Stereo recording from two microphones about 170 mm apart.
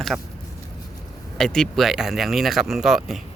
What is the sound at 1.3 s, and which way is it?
Speech, 5° left (ahead or behind).